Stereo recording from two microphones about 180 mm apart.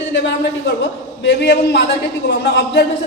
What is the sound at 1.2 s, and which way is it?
Speech, 75° left (ahead or behind).